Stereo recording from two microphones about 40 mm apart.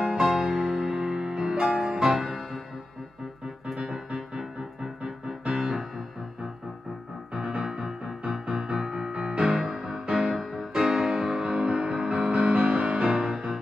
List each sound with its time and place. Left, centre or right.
0.0 s music: centre
3.6 s music: centre
7.3 s music: centre
10.3 s music: centre
11.4 s music: right